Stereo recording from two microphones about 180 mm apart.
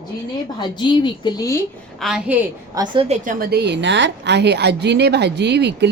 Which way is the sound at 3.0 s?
45° right (ahead or behind).